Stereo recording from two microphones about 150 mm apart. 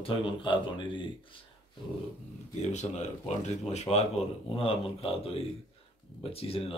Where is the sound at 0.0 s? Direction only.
35° left (ahead or behind).